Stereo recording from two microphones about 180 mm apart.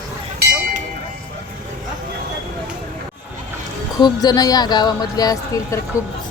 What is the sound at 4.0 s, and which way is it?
Speech, 20° left (ahead or behind).